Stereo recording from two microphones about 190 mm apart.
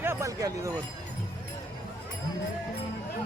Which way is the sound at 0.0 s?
15° right (ahead or behind).